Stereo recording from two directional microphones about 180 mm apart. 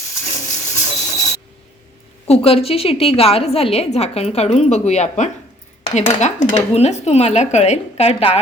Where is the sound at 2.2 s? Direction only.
35° left (ahead or behind).